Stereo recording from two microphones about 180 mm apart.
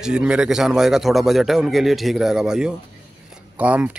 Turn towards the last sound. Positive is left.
turn(degrees=-5)  # may be behind; listen again after turning